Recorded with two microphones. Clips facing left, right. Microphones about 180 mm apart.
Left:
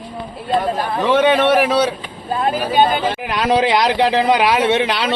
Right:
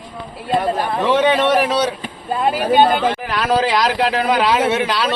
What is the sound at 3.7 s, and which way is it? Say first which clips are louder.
Speech: left 2 dB; 25° left (ahead or behind).